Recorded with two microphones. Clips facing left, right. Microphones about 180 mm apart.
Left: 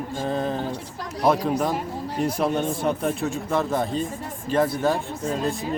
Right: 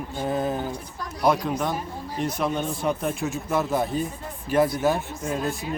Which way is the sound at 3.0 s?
Centre (ahead or behind).